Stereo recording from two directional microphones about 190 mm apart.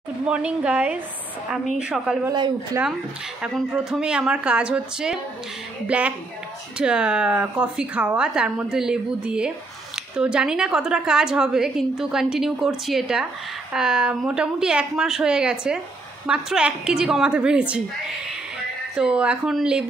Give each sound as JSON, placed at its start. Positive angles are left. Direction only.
{"t": 0.3, "sound": "a woman's voice", "side_deg": -5}
{"t": 2.3, "sound": "speech", "side_deg": -25}
{"t": 3.4, "sound": "a woman's voice", "side_deg": -5}
{"t": 18.9, "sound": "a woman's voice", "side_deg": -5}